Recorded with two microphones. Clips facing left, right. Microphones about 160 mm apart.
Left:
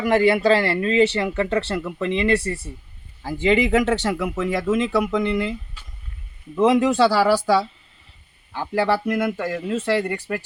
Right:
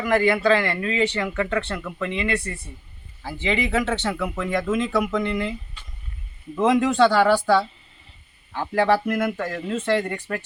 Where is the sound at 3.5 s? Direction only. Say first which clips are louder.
Left 5 dB; 15° left (ahead or behind).